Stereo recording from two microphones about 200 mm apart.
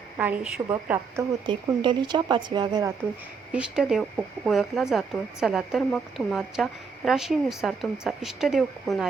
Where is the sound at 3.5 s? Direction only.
5° right (ahead or behind).